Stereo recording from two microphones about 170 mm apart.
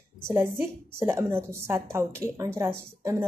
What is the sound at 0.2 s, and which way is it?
A woman's voice, 15° right (ahead or behind).